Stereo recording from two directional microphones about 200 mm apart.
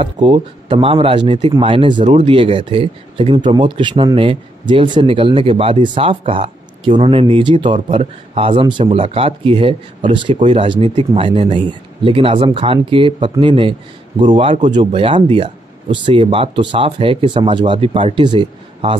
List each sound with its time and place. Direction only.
0.0 s speech: 25° right (ahead or behind)